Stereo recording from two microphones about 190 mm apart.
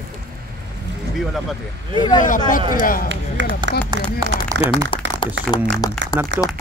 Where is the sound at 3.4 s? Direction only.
70° right (ahead or behind).